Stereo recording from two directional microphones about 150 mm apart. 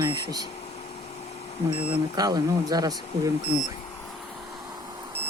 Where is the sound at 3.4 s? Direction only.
45° left (ahead or behind).